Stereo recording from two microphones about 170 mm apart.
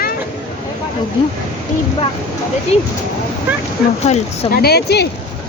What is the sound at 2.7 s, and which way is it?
Speech, 40° left (ahead or behind).